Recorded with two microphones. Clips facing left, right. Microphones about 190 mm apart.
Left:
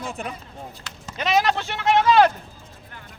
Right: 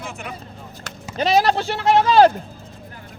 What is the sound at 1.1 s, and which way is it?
A man's voice, 35° right (ahead or behind).